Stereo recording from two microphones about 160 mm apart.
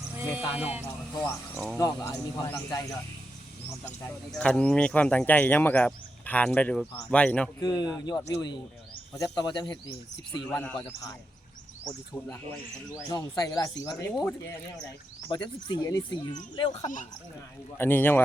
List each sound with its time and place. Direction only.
0.2 s speech: 10° right (ahead or behind)
1.1 s speech: 15° left (ahead or behind)
4.3 s speech: 5° left (ahead or behind)
7.6 s speech: 25° left (ahead or behind)
10.5 s speech: 10° left (ahead or behind)
11.9 s speech: 5° left (ahead or behind)
12.9 s speech: 25° left (ahead or behind)
15.3 s speech: 25° left (ahead or behind)
17.7 s speech: 15° left (ahead or behind)